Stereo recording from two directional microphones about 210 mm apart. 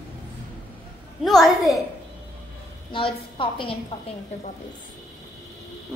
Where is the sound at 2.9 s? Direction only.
25° left (ahead or behind).